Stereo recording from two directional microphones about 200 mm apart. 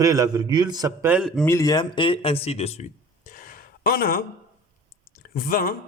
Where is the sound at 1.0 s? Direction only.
5° right (ahead or behind).